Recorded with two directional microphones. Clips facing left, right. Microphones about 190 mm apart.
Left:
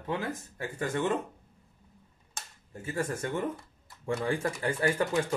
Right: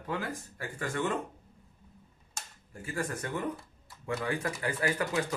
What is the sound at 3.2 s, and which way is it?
Speech, 25° left (ahead or behind).